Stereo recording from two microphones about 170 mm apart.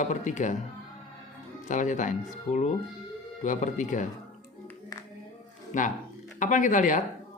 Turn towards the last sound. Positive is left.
turn(degrees=50)  # may be behind; listen again after turning